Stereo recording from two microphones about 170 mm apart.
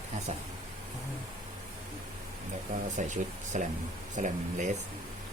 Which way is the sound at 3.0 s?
45° right (ahead or behind).